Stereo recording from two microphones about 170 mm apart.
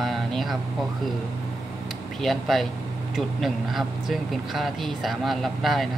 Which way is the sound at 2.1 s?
Centre (ahead or behind).